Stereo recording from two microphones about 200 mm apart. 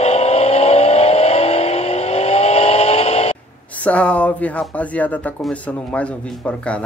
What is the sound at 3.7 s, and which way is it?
Speech, 5° left (ahead or behind).